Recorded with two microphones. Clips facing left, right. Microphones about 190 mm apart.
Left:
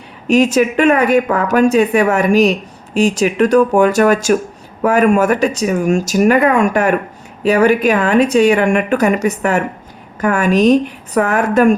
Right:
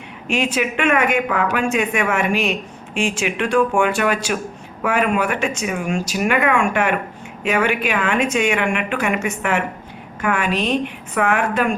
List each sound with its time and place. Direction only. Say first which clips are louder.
0.3 s speech: left 9 dB; 40° left (ahead or behind)